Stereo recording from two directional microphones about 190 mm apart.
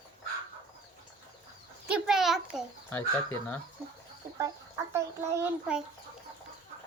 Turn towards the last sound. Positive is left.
turn(degrees=-10)  # may be behind; listen again after turning